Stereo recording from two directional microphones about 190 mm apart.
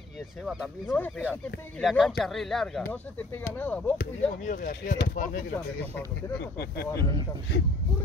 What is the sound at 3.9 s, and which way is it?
Speech, 45° left (ahead or behind).